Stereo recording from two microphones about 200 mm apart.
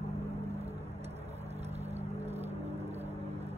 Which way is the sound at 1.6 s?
30° right (ahead or behind).